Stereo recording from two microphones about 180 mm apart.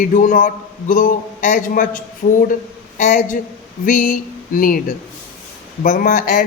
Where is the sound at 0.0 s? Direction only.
45° left (ahead or behind).